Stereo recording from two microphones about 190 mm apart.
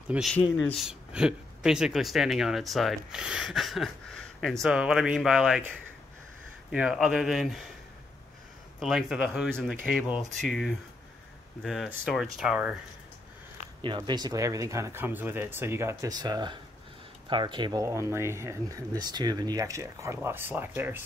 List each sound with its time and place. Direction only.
0.1 s speech: centre (ahead or behind)
0.4 s a man's voice: 10° left (ahead or behind)
0.7 s speech: 5° right (ahead or behind)
6.7 s speech: 5° right (ahead or behind)
8.7 s speech: centre (ahead or behind)
13.7 s speech: 25° right (ahead or behind)